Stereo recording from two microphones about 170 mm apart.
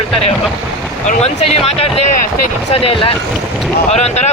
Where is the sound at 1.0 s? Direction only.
40° left (ahead or behind).